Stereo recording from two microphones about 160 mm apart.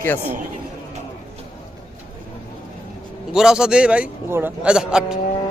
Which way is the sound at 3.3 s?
5° right (ahead or behind).